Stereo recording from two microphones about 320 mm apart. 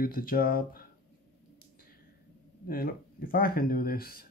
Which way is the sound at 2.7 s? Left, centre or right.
Left.